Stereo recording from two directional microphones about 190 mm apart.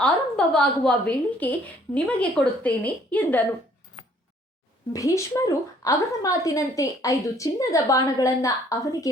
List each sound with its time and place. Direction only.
0.0 s a woman's voice: 5° left (ahead or behind)
4.9 s a woman's voice: 15° left (ahead or behind)